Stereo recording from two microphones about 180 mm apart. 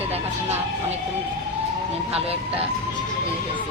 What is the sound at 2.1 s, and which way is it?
Speech, 35° right (ahead or behind).